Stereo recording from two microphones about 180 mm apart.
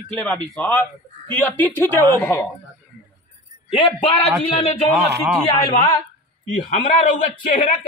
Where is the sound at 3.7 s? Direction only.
25° left (ahead or behind).